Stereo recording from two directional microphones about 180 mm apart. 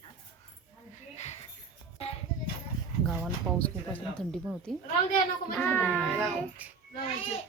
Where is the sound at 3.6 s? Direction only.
5° left (ahead or behind).